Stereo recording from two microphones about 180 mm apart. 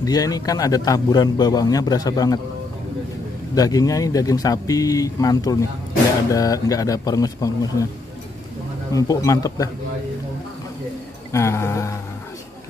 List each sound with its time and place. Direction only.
0.0 s a man's voice: 20° left (ahead or behind)
3.5 s a man's voice: 20° left (ahead or behind)
8.9 s a man's voice: 20° left (ahead or behind)
11.3 s music: 15° left (ahead or behind)